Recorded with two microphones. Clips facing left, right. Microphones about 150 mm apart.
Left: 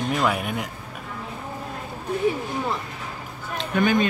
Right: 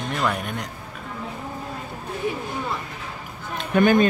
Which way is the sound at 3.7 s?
50° right (ahead or behind).